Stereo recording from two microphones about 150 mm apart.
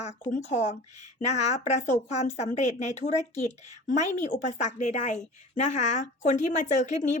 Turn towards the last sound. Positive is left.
turn(degrees=50)  # may be behind; listen again after turning